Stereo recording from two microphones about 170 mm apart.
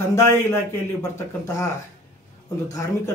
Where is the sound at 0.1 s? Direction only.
15° left (ahead or behind).